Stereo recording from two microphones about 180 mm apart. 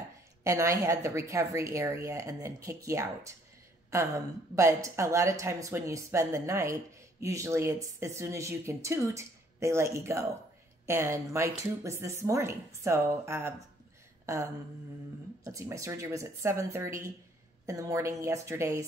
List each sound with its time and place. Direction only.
0.4 s a woman's voice: 15° right (ahead or behind)
14.2 s a sound: 15° right (ahead or behind)
15.4 s a woman's voice: 15° right (ahead or behind)